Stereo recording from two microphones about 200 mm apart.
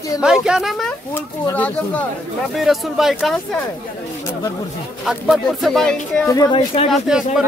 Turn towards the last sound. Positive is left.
turn(degrees=-5)  # may be behind; listen again after turning